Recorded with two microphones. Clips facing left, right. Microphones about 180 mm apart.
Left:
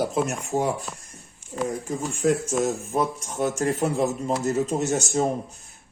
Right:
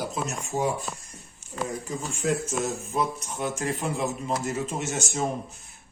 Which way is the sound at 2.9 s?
50° left (ahead or behind).